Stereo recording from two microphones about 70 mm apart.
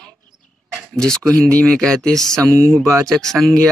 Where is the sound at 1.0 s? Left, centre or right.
Centre.